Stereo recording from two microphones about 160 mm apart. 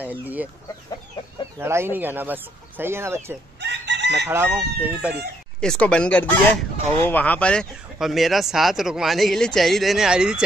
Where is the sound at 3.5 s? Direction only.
90° right.